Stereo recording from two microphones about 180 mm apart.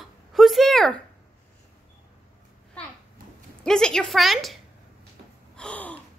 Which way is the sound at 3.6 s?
5° left (ahead or behind).